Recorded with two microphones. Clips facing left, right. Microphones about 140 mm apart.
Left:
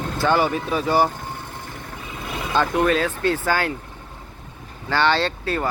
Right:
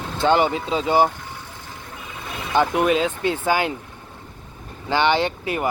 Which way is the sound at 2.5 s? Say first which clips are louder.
Right 1 dB; 15° right (ahead or behind).